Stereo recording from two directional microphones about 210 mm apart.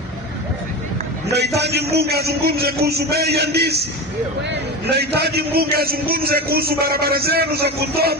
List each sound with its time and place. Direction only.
1.3 s a man's voice: 50° right (ahead or behind)
4.8 s a man's voice: 50° right (ahead or behind)